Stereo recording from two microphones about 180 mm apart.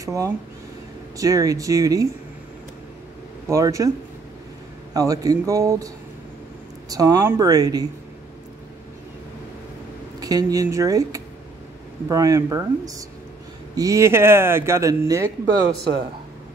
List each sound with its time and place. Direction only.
0.0 s speech: 20° right (ahead or behind)
3.4 s a man's voice: 15° right (ahead or behind)
4.9 s speech: 20° right (ahead or behind)
6.9 s speech: 20° right (ahead or behind)
10.2 s a man's voice: 20° right (ahead or behind)